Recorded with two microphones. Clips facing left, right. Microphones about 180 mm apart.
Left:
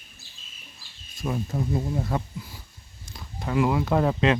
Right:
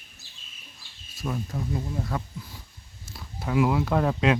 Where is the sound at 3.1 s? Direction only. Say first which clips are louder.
Even; 5° right (ahead or behind).